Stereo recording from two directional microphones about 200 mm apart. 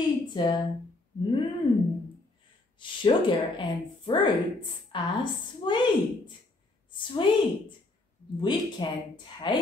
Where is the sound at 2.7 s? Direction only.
25° left (ahead or behind).